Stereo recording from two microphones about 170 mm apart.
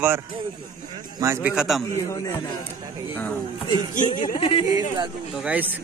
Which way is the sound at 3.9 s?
50° left (ahead or behind).